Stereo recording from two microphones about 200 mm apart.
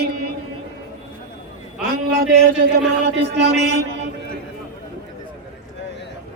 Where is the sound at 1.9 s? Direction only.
50° right (ahead or behind).